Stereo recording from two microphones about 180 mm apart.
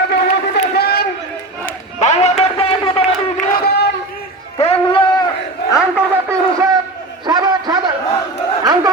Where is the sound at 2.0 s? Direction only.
40° left (ahead or behind).